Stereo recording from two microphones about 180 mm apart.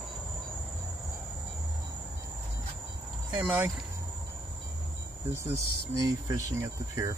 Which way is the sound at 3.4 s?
5° right (ahead or behind).